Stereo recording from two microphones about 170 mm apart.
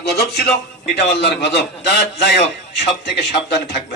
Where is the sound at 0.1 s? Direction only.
70° left (ahead or behind).